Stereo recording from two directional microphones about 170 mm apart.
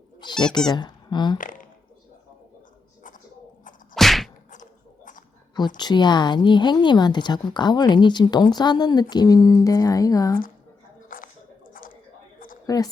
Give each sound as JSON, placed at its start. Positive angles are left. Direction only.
{"t": 0.2, "sound": "speech", "side_deg": 25}
{"t": 1.4, "sound": "speech", "side_deg": 50}
{"t": 3.9, "sound": "whip", "side_deg": 0}
{"t": 4.5, "sound": "a sound", "side_deg": 50}
{"t": 5.5, "sound": "speech", "side_deg": 25}
{"t": 11.1, "sound": "a sound", "side_deg": 55}
{"t": 12.6, "sound": "a woman's voice", "side_deg": 20}